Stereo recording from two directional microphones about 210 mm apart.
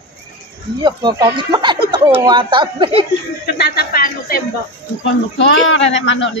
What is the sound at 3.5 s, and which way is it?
Speech, 50° left (ahead or behind).